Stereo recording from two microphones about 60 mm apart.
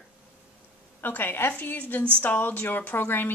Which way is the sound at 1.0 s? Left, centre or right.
Left.